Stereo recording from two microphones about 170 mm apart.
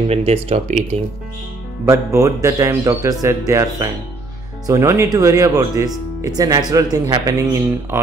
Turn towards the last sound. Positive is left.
turn(degrees=-15)  # may be behind; listen again after turning